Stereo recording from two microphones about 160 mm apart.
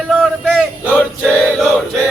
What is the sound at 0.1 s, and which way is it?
Male singing, centre (ahead or behind).